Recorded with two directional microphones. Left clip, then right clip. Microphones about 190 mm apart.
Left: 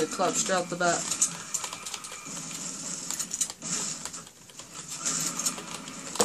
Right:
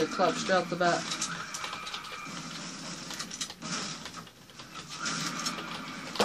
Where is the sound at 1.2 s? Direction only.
5° right (ahead or behind).